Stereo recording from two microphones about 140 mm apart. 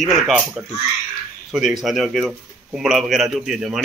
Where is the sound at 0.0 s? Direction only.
Centre (ahead or behind).